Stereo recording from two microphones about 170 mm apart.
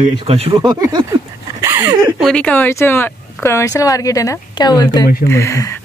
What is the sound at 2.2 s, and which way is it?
Speech, 5° left (ahead or behind).